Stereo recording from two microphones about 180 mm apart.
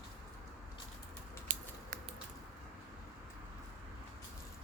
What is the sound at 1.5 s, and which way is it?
Scissors, 50° right (ahead or behind).